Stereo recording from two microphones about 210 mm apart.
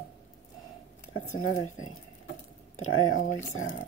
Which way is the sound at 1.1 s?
80° left.